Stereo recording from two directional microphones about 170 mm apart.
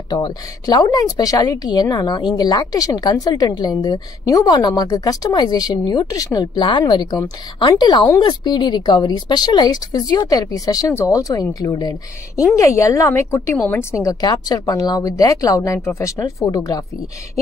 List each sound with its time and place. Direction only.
0.1 s speech: 25° left (ahead or behind)